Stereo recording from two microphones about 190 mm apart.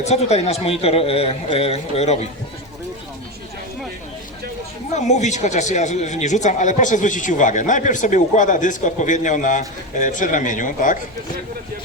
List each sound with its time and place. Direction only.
0.0 s speech: 35° left (ahead or behind)
4.9 s speech: 40° left (ahead or behind)